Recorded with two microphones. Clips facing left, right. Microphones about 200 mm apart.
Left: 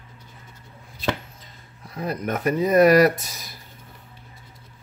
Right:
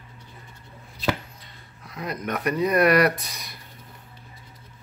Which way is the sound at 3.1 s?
Centre (ahead or behind).